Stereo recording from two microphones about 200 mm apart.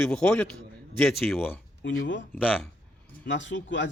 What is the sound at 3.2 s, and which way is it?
Speech, 65° left (ahead or behind).